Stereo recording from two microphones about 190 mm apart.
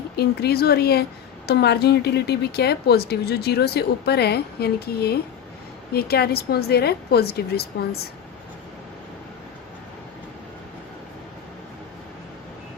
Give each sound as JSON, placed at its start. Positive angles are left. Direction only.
{"t": 0.2, "sound": "speech", "side_deg": 55}